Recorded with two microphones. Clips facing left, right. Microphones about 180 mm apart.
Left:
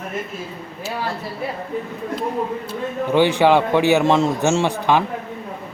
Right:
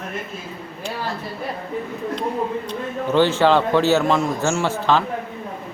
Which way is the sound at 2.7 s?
15° left (ahead or behind).